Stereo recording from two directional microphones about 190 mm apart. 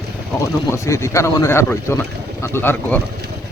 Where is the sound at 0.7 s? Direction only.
15° left (ahead or behind).